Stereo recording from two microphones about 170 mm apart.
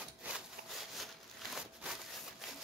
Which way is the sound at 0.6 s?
55° right (ahead or behind).